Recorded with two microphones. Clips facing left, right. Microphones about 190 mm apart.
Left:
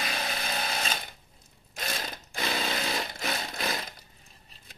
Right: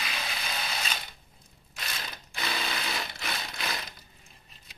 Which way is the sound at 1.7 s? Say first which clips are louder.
Left 5 dB; 40° left (ahead or behind).